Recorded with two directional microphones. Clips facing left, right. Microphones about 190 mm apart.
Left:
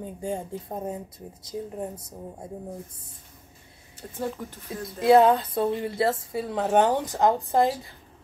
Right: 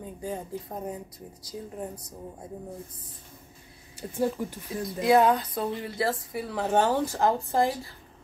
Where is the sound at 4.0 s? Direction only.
10° right (ahead or behind).